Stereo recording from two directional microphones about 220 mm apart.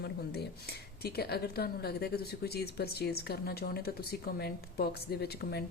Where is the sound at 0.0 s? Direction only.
45° left (ahead or behind).